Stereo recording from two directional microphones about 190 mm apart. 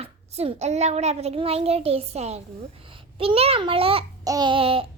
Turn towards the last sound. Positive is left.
turn(degrees=-30)  # may be behind; listen again after turning